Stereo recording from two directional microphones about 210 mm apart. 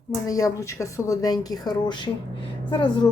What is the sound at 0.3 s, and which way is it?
Speech, 15° left (ahead or behind).